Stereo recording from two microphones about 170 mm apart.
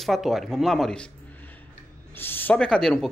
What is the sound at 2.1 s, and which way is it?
Speech, 10° left (ahead or behind).